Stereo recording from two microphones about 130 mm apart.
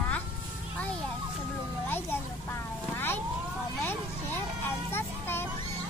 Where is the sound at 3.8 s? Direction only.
15° left (ahead or behind).